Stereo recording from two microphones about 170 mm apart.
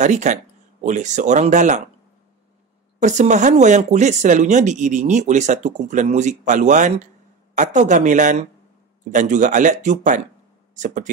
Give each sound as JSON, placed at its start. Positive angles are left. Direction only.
{"t": 0.0, "sound": "speech", "side_deg": -45}
{"t": 3.0, "sound": "speech", "side_deg": -45}